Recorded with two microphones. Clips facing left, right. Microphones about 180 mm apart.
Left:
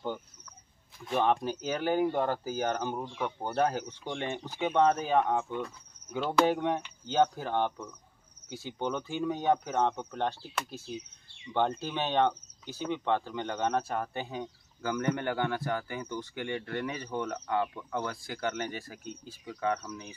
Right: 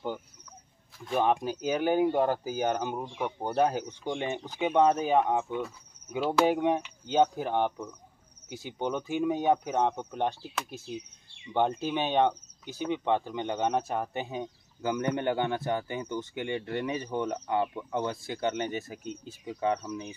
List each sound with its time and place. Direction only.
1.1 s speech: 10° right (ahead or behind)
11.5 s speech: 15° right (ahead or behind)